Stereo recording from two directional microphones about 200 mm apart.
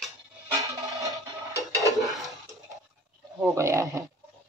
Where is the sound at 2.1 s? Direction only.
Centre (ahead or behind).